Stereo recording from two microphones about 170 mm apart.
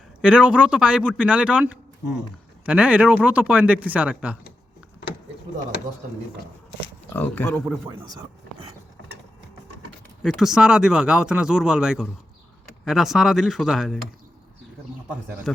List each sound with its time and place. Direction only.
0.2 s a man's voice: 5° right (ahead or behind)
7.1 s speech: 10° left (ahead or behind)
7.9 s speech: 20° right (ahead or behind)
10.2 s speech: centre (ahead or behind)
15.5 s speech: centre (ahead or behind)